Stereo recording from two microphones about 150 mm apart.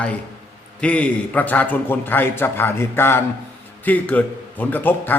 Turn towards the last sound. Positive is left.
turn(degrees=10)  # may be behind; listen again after turning